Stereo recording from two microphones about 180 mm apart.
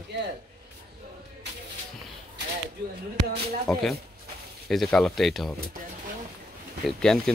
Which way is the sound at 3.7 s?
Centre (ahead or behind).